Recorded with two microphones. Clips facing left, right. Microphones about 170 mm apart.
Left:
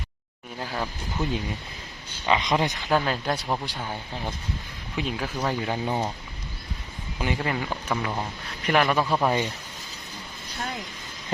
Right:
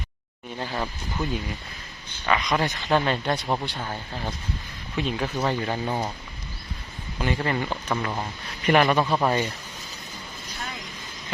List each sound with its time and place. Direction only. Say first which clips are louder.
0.6 s speech: right 1 dB; centre (ahead or behind)
2.2 s speech: left 1 dB; 25° left (ahead or behind)
2.9 s speech: right 2 dB; 5° left (ahead or behind)
3.4 s speech: right 2 dB; 10° right (ahead or behind)
3.7 s speech: right 1 dB; 10° left (ahead or behind)
7.2 s speech: right 2 dB; 10° left (ahead or behind)
9.1 s speech: right 1 dB; 10° left (ahead or behind)